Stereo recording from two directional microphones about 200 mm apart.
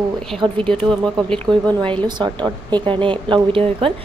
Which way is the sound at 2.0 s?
20° right (ahead or behind).